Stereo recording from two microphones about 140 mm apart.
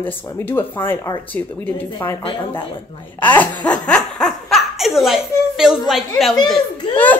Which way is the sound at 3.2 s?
10° left (ahead or behind).